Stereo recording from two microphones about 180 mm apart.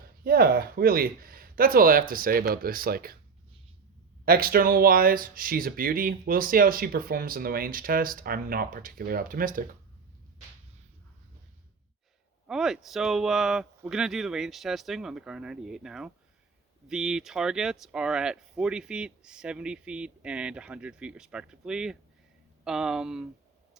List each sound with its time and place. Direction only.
0.3 s speech: 55° right (ahead or behind)
4.3 s speech: 55° right (ahead or behind)
12.5 s speech: centre (ahead or behind)